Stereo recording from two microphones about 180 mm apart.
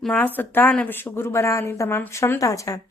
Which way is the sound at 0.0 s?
5° left (ahead or behind).